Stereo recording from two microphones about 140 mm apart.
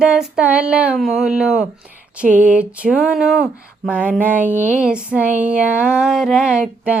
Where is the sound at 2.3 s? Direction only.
70° right (ahead or behind).